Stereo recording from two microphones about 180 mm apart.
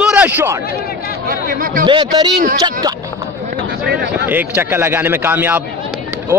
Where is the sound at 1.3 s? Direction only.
50° right (ahead or behind).